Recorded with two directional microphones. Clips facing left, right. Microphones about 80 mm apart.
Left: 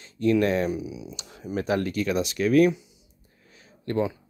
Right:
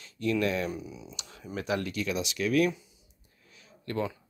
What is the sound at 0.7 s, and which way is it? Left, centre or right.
Speech, centre.